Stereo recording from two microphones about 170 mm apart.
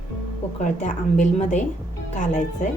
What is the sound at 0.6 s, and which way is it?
A woman's voice, 45° left (ahead or behind).